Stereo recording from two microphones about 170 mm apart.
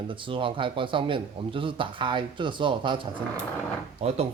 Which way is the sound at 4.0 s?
35° right (ahead or behind).